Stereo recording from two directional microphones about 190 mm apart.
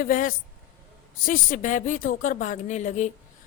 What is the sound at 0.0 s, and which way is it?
A woman's voice, 45° left (ahead or behind).